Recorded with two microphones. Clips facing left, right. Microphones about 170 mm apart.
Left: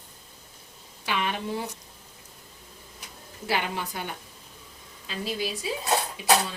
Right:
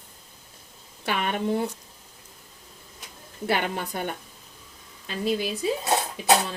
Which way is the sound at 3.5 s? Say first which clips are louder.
Right 3 dB; 50° right (ahead or behind).